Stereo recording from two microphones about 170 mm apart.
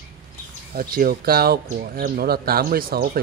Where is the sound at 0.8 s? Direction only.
60° right (ahead or behind).